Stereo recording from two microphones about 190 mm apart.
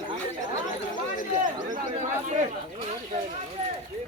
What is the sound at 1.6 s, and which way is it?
Chatter, 40° right (ahead or behind).